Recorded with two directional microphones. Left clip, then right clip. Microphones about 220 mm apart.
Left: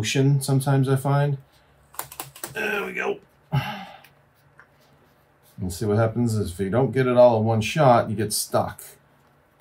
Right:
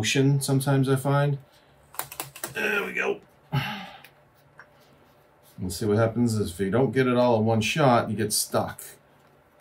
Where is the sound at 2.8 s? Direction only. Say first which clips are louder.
Even; 15° left (ahead or behind).